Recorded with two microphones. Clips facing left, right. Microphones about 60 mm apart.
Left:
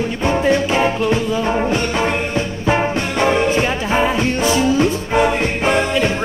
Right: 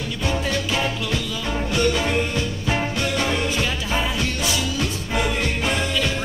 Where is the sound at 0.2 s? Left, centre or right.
Left.